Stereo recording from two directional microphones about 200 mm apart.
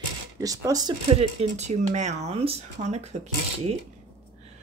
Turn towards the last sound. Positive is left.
turn(degrees=-30)  # may be behind; listen again after turning